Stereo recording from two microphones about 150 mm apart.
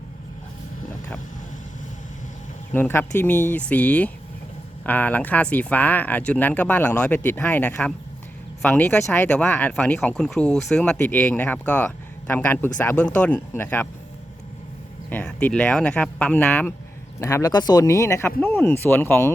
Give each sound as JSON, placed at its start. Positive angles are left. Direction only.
{"t": 2.7, "sound": "speech", "side_deg": 15}
{"t": 15.1, "sound": "speech", "side_deg": 10}